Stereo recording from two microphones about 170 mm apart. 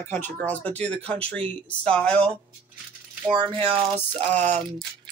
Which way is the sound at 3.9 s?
10° left (ahead or behind).